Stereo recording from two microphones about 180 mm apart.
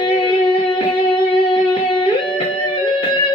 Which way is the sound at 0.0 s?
30° left (ahead or behind).